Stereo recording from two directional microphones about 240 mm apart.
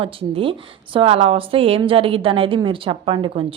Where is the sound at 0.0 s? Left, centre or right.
Right.